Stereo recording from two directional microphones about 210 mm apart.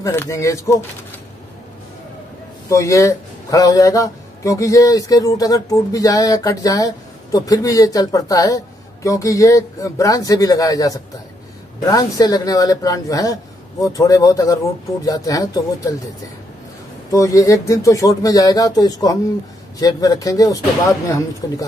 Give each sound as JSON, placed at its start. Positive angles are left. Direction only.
{"t": 0.0, "sound": "speech", "side_deg": 15}
{"t": 2.7, "sound": "speech", "side_deg": 15}
{"t": 17.1, "sound": "speech", "side_deg": 15}